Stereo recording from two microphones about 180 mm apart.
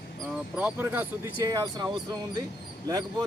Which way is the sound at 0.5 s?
10° right (ahead or behind).